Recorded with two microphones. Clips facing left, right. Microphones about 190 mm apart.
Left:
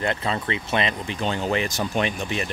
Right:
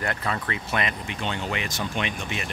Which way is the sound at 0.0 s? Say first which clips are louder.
Left 3 dB; 25° left (ahead or behind).